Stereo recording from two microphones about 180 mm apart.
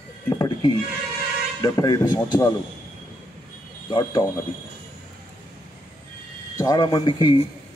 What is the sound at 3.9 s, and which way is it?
Speech, 25° left (ahead or behind).